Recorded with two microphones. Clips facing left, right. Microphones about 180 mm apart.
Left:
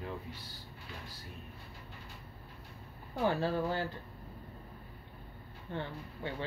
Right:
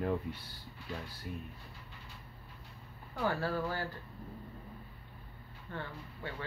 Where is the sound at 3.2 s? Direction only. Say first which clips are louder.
Left 2 dB; 20° left (ahead or behind).